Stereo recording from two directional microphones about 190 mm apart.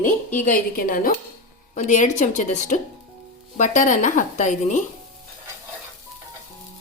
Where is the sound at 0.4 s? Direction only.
45° left (ahead or behind).